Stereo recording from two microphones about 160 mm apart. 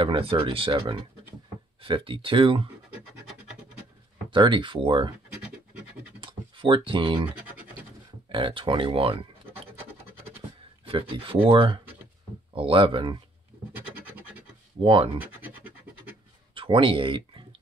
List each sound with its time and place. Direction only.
0.0 s speech: 35° right (ahead or behind)
4.3 s speech: 30° right (ahead or behind)
6.2 s a sound: 30° right (ahead or behind)
8.3 s speech: 30° right (ahead or behind)
10.9 s speech: 35° right (ahead or behind)
13.7 s scratch: 10° right (ahead or behind)
14.8 s speech: 30° right (ahead or behind)
15.1 s scratch: 10° right (ahead or behind)
16.5 s a sound: 30° right (ahead or behind)